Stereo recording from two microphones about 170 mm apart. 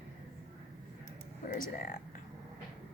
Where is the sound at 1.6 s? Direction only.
55° left (ahead or behind).